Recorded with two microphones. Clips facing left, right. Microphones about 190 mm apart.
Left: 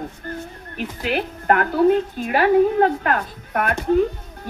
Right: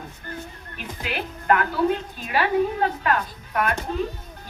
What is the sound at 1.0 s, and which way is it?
A woman's voice, 50° left (ahead or behind).